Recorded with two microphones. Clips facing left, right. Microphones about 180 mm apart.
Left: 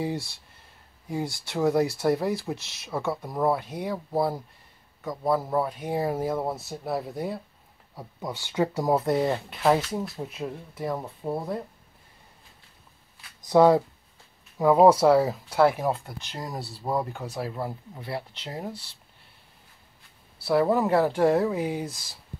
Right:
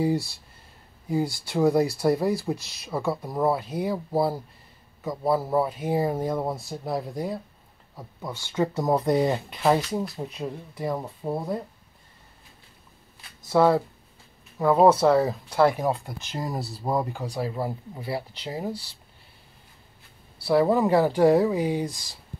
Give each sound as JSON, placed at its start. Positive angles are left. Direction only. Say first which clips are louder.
{"t": 0.0, "sound": "speech", "louder": "right 6 dB", "side_deg": 0}
{"t": 13.4, "sound": "speech", "louder": "left 2 dB", "side_deg": 15}
{"t": 20.4, "sound": "speech", "louder": "right 2 dB", "side_deg": 0}